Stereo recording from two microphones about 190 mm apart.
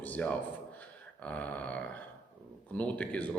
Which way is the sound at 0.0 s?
5° left (ahead or behind).